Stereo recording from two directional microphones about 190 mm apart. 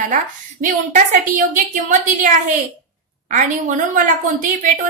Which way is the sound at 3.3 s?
40° right (ahead or behind).